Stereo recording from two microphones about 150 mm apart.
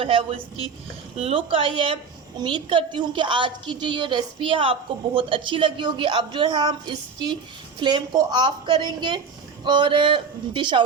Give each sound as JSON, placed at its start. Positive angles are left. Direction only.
{"t": 0.0, "sound": "a woman's voice", "side_deg": -35}